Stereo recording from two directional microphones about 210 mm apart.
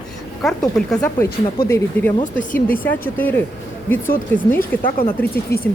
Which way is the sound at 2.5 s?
45° left (ahead or behind).